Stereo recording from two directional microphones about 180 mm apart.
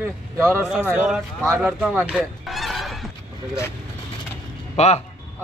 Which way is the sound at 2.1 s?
Centre (ahead or behind).